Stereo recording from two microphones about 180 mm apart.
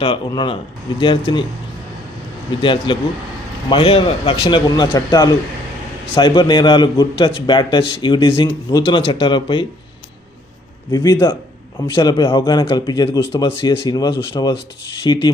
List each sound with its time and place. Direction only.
0.0 s a man's voice: 30° left (ahead or behind)
2.6 s a man's voice: 30° left (ahead or behind)
10.9 s a man's voice: 25° left (ahead or behind)